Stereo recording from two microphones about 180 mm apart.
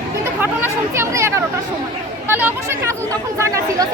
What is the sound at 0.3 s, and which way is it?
Speech, 10° right (ahead or behind).